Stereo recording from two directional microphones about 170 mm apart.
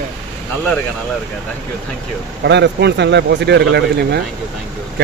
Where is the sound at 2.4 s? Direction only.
85° right.